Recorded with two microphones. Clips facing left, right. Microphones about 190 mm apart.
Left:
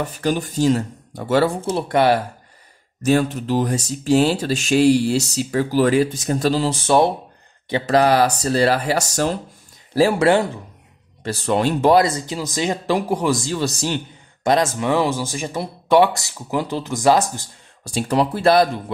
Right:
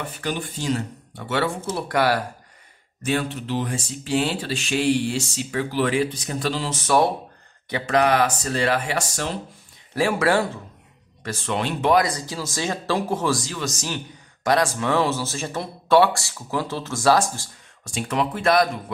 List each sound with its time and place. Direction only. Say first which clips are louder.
0.0 s speech: left 7 dB; 40° left (ahead or behind)
1.7 s a man's voice: left 3 dB; 25° left (ahead or behind)
3.0 s speech: left 7 dB; 40° left (ahead or behind)
9.9 s a man's voice: left 5 dB; 30° left (ahead or behind)
11.2 s a man's voice: left 6 dB; 40° left (ahead or behind); by 13.4 s 15° left (ahead or behind)
13.4 s a man's voice: left 7 dB; 30° left (ahead or behind)
17.8 s speech: left 5 dB; 35° left (ahead or behind)